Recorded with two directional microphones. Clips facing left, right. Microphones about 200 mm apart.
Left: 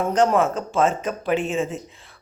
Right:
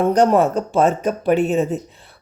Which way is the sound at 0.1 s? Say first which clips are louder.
Right 4 dB; 35° right (ahead or behind).